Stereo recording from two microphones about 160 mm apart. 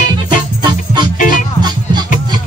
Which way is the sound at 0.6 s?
30° right (ahead or behind).